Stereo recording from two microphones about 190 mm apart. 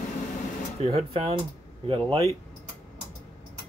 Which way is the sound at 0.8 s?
30° right (ahead or behind).